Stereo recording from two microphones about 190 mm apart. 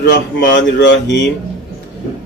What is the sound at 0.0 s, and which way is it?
Mantra, 65° left (ahead or behind).